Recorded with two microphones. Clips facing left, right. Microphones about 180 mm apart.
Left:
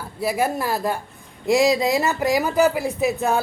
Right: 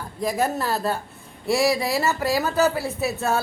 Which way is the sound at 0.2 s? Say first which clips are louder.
Left 1 dB; 10° left (ahead or behind).